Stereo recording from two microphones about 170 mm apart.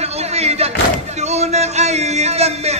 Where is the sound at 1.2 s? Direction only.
40° right (ahead or behind).